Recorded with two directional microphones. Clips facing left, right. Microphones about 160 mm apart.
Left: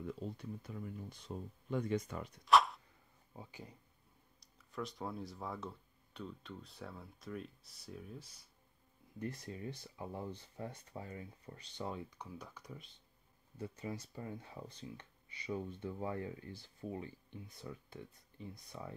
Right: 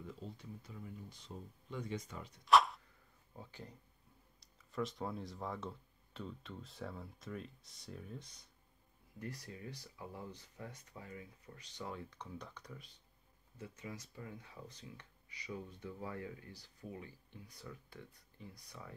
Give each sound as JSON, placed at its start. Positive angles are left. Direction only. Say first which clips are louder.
{"t": 0.4, "sound": "speech", "louder": "left 5 dB", "side_deg": 55}
{"t": 2.4, "sound": "a sound", "louder": "even", "side_deg": 0}
{"t": 3.3, "sound": "speech", "louder": "even", "side_deg": 10}
{"t": 4.6, "sound": "speech", "louder": "right 3 dB", "side_deg": 0}
{"t": 9.2, "sound": "speech", "louder": "left 4 dB", "side_deg": 25}
{"t": 12.0, "sound": "speech", "louder": "left 1 dB", "side_deg": 10}
{"t": 13.6, "sound": "speech", "louder": "left 5 dB", "side_deg": 30}